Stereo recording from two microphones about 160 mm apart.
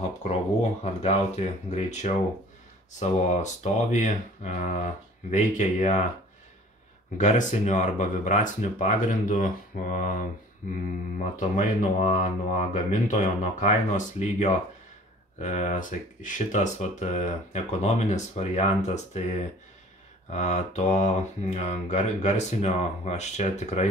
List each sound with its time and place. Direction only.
0.2 s speech: 45° left (ahead or behind)
7.2 s speech: 50° left (ahead or behind)